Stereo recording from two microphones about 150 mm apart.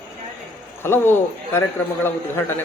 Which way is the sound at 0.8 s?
15° left (ahead or behind).